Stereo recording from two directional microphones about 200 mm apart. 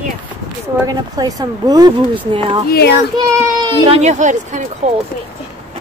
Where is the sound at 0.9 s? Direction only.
20° right (ahead or behind).